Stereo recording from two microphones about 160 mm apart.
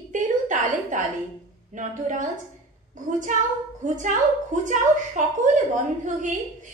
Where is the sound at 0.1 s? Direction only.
50° right (ahead or behind).